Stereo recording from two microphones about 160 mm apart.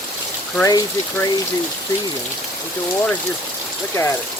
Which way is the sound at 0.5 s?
15° left (ahead or behind).